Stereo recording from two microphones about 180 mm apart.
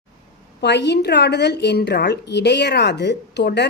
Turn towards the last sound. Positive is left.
turn(degrees=70)  # may be behind; listen again after turning